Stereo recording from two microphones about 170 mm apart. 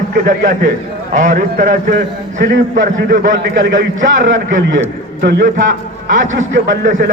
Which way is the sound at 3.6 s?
90° right.